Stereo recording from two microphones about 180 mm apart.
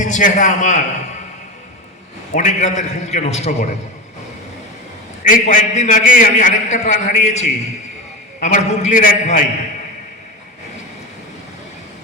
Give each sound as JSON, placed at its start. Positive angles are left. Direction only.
{"t": 0.0, "sound": "a man's voice", "side_deg": 45}
{"t": 2.3, "sound": "a man's voice", "side_deg": 40}
{"t": 5.3, "sound": "a man's voice", "side_deg": 45}